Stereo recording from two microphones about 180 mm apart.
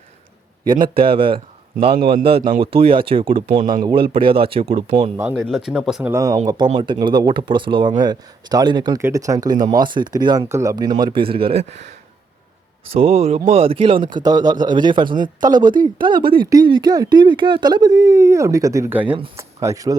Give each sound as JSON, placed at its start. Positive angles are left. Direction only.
{"t": 0.9, "sound": "a man's voice", "side_deg": -30}
{"t": 3.6, "sound": "speech", "side_deg": -50}
{"t": 3.8, "sound": "speech", "side_deg": -30}
{"t": 5.1, "sound": "speech", "side_deg": -15}
{"t": 5.4, "sound": "a man's voice", "side_deg": 0}
{"t": 12.9, "sound": "a man's voice", "side_deg": -35}